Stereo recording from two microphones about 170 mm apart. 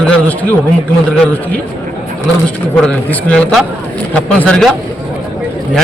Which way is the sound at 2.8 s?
10° left (ahead or behind).